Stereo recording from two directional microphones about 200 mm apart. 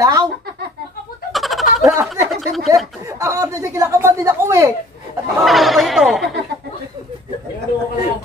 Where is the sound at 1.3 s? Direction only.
Centre (ahead or behind).